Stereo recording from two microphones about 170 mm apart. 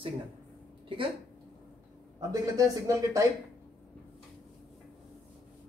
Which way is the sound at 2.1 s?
20° right (ahead or behind).